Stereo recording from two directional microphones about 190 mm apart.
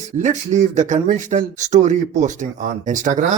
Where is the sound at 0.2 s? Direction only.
40° right (ahead or behind).